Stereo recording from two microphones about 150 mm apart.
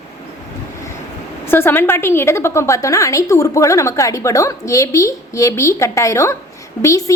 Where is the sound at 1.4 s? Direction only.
15° left (ahead or behind).